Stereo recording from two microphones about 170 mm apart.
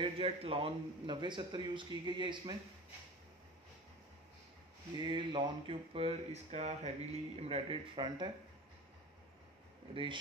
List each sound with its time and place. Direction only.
0.0 s a man's voice: 35° right (ahead or behind)
4.9 s speech: 30° right (ahead or behind)